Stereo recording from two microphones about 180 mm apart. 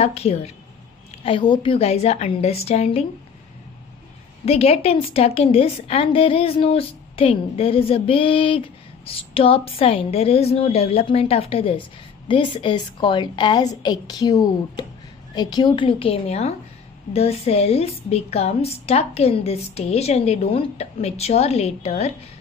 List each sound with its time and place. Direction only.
0.0 s a woman's voice: 35° left (ahead or behind)
4.5 s a woman's voice: 35° left (ahead or behind)